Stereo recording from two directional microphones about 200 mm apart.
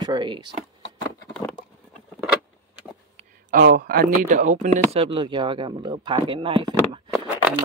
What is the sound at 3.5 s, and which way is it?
Speech, 45° right (ahead or behind).